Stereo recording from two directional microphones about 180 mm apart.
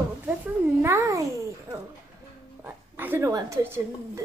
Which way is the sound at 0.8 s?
15° right (ahead or behind).